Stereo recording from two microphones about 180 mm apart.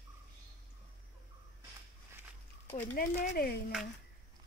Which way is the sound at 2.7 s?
50° left (ahead or behind).